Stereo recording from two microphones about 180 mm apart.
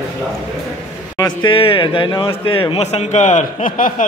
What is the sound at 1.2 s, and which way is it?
A man's voice, 25° left (ahead or behind).